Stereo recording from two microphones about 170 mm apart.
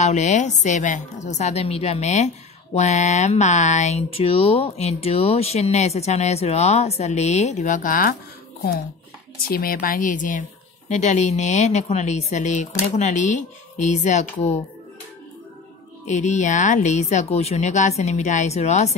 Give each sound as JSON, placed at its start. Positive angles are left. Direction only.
{"t": 0.0, "sound": "a woman's voice", "side_deg": 45}
{"t": 9.5, "sound": "speech", "side_deg": 60}
{"t": 16.1, "sound": "speech", "side_deg": 45}